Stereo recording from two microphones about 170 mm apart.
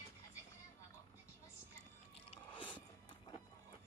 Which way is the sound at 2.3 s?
30° left (ahead or behind).